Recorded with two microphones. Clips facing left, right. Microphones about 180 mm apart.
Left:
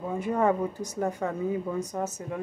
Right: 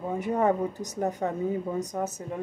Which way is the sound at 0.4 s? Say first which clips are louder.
Even; 20° right (ahead or behind).